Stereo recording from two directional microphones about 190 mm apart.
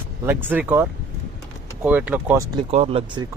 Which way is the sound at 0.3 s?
10° right (ahead or behind).